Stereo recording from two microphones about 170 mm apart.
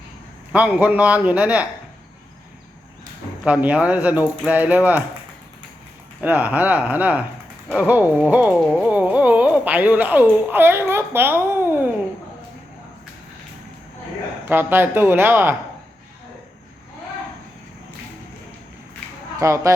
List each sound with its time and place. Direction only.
0.5 s speech: 10° right (ahead or behind)
3.4 s speech: 10° right (ahead or behind)
6.2 s speech: 10° right (ahead or behind)
7.8 s a sound: 10° right (ahead or behind)
14.4 s speech: 15° right (ahead or behind)
19.4 s speech: 15° right (ahead or behind)